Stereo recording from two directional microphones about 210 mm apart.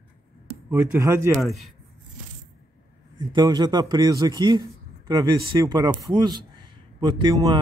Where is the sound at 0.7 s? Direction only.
10° right (ahead or behind).